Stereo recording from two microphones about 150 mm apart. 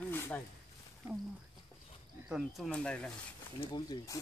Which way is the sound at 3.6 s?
30° left (ahead or behind).